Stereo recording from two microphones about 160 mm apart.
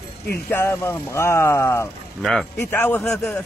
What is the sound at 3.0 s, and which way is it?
Speech, centre (ahead or behind).